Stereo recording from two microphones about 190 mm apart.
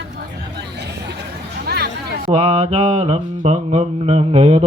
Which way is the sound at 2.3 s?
35° right (ahead or behind).